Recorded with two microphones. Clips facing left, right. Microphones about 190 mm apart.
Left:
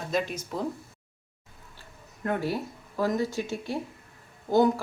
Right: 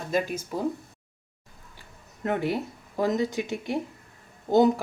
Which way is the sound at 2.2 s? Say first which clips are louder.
Right 2 dB; 20° right (ahead or behind).